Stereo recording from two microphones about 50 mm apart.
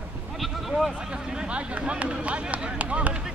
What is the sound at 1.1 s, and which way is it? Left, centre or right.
Speech, centre.